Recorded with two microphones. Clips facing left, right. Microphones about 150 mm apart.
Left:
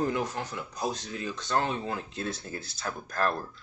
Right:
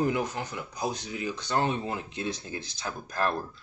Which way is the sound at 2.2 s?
Centre (ahead or behind).